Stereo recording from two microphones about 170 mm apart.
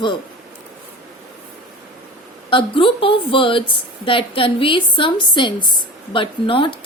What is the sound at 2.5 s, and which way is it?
A woman's voice, 30° left (ahead or behind).